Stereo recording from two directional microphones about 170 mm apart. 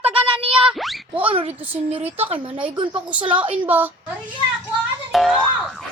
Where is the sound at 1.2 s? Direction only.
30° right (ahead or behind).